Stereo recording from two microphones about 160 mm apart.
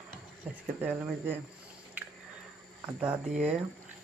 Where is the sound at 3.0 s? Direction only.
5° right (ahead or behind).